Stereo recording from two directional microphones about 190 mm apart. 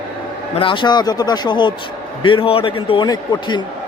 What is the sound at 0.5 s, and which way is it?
Speech, 25° left (ahead or behind).